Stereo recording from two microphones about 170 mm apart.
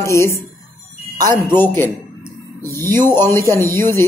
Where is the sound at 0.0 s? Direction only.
15° left (ahead or behind).